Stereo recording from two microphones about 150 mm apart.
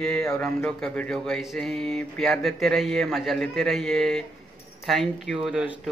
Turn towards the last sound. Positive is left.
turn(degrees=-5)  # may be behind; listen again after turning